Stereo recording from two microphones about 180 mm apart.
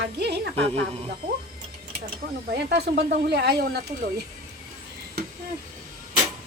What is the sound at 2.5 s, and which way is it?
Speech, 70° right (ahead or behind).